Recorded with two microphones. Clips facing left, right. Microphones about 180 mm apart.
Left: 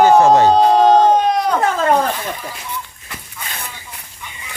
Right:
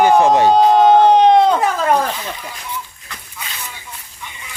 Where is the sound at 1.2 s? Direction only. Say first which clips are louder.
Right 6 dB; 25° right (ahead or behind).